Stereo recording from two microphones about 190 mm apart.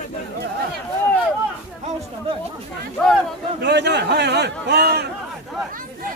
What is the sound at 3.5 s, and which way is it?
A man's voice, 60° right (ahead or behind).